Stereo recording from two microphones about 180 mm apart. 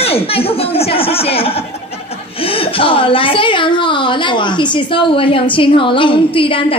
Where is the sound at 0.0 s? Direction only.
30° left (ahead or behind).